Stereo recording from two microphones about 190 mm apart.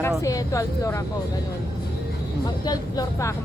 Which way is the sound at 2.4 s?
20° left (ahead or behind).